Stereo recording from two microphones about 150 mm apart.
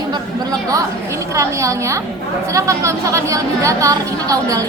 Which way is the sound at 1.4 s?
20° right (ahead or behind).